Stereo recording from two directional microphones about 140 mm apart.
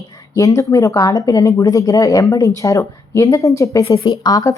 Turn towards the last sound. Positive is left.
turn(degrees=25)  # may be behind; listen again after turning